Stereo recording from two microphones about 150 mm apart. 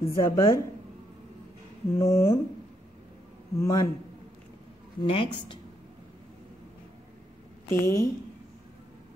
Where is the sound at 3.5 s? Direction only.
20° left (ahead or behind).